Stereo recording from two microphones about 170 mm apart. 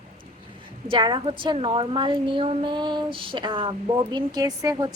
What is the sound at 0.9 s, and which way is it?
A woman's voice, 30° right (ahead or behind).